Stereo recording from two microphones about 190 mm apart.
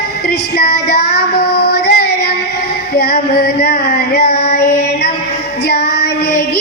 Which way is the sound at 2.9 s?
55° left (ahead or behind).